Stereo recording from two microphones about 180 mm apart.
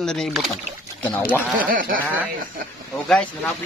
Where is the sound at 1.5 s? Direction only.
50° right (ahead or behind).